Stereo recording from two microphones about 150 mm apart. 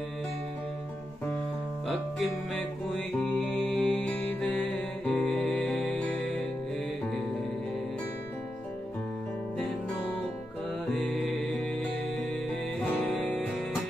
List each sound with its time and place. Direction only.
2.9 s music: 5° left (ahead or behind)
10.9 s music: centre (ahead or behind)
12.8 s music: 5° left (ahead or behind)